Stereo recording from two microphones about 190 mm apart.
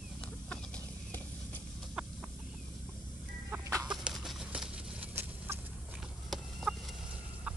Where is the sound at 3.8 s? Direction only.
Centre (ahead or behind).